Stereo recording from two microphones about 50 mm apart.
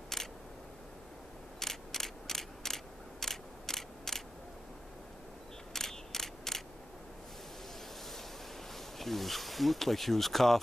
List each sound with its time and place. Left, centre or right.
0.1 s camera: centre
1.6 s mechanisms: centre
5.7 s mechanisms: centre
8.7 s speech: centre